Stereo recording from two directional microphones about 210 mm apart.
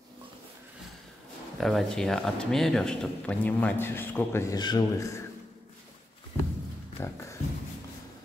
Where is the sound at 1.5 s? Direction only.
Centre (ahead or behind); by 5.2 s 15° left (ahead or behind).